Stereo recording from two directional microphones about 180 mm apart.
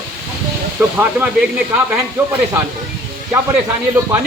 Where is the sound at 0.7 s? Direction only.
10° right (ahead or behind).